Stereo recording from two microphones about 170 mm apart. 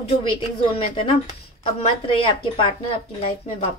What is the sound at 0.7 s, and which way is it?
Speech, 35° left (ahead or behind).